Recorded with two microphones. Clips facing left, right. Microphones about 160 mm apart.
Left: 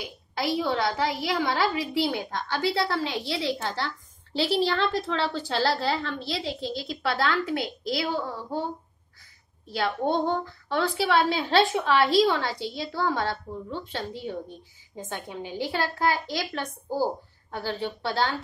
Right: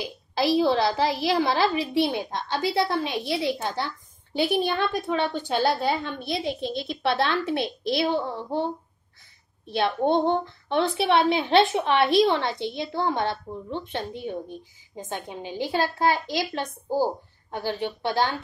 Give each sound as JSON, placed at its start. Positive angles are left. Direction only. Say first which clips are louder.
{"t": 0.0, "sound": "a woman's voice", "louder": "right 5 dB", "side_deg": -30}
{"t": 9.7, "sound": "a woman's voice", "louder": "right 3 dB", "side_deg": -25}